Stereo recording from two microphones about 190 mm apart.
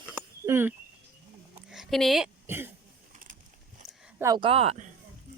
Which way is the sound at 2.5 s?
10° right (ahead or behind).